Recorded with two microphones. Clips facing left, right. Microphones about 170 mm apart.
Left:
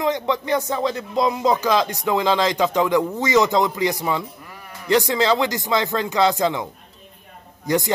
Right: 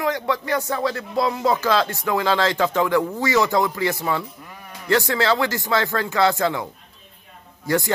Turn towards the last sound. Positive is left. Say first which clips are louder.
# left 1 dB
turn(degrees=20)  # may be behind; listen again after turning